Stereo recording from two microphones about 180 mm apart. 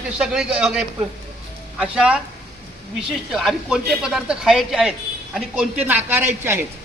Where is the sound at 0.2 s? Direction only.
5° right (ahead or behind).